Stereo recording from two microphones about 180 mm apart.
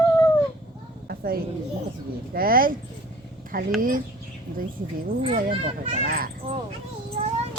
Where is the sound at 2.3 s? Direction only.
55° right (ahead or behind).